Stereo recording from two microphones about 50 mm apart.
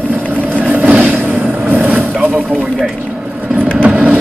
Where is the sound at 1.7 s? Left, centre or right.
Right.